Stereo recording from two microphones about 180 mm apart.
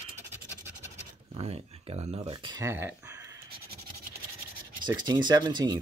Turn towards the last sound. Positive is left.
turn(degrees=-25)  # may be behind; listen again after turning